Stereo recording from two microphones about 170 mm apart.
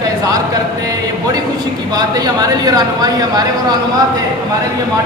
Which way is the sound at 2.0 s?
20° right (ahead or behind).